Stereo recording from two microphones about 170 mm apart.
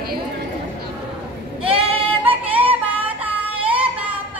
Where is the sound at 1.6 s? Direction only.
35° right (ahead or behind).